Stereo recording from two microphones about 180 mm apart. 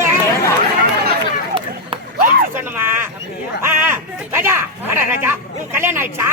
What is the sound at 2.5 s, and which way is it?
Speech, 10° right (ahead or behind).